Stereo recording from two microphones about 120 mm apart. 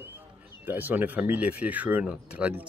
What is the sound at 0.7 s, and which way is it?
Speech, 15° right (ahead or behind).